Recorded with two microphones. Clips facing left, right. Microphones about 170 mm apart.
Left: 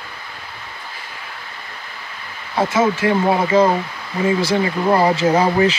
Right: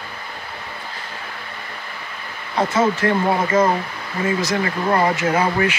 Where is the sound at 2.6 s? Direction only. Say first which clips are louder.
Left 1 dB; 5° left (ahead or behind).